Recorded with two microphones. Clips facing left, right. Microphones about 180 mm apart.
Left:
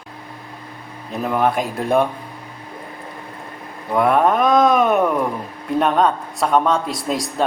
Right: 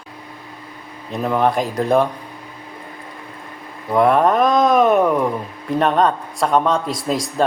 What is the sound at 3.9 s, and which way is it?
Speech, centre (ahead or behind).